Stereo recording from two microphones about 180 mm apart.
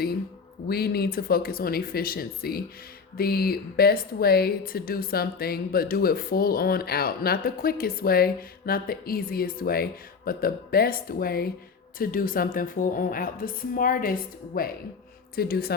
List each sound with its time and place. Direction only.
0.7 s a woman's voice: 60° left (ahead or behind)